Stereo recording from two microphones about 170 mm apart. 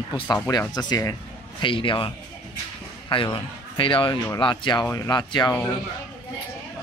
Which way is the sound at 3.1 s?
30° left (ahead or behind).